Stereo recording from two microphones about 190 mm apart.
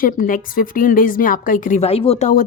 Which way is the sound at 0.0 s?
45° left (ahead or behind).